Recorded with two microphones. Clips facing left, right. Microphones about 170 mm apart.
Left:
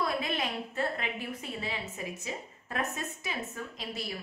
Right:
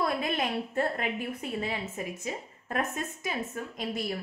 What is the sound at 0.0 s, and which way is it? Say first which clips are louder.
A woman's voice: right 3 dB; 50° right (ahead or behind).